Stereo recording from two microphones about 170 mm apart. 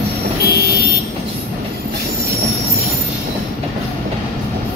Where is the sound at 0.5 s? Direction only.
65° left (ahead or behind).